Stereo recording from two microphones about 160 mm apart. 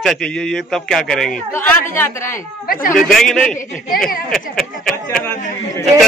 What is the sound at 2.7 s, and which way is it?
Speech, 60° left (ahead or behind).